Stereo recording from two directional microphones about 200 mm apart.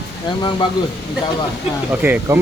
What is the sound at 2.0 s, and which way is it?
Speech, 10° right (ahead or behind).